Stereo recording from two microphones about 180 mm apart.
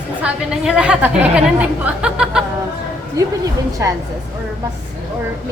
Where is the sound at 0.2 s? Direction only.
5° right (ahead or behind).